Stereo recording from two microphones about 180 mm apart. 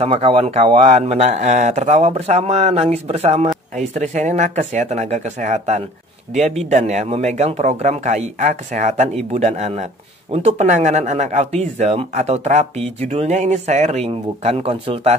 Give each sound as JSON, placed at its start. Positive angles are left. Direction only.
{"t": 0.0, "sound": "speech", "side_deg": -30}